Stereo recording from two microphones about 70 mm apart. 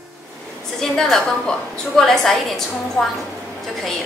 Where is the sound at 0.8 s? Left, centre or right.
Centre.